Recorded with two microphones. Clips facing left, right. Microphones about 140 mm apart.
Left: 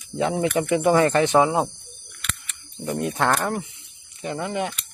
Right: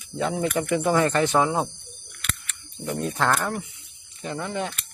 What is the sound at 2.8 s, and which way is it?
Speech, 15° left (ahead or behind).